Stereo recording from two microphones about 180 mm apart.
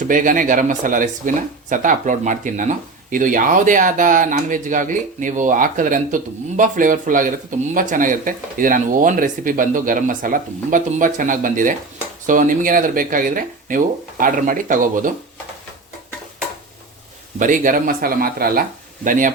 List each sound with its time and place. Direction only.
0.0 s speech: 45° right (ahead or behind)
17.4 s speech: 45° right (ahead or behind)